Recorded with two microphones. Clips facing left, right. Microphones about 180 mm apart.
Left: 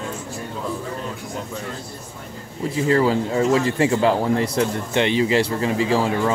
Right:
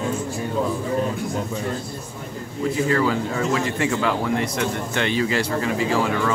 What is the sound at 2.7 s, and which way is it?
Speech, 30° left (ahead or behind).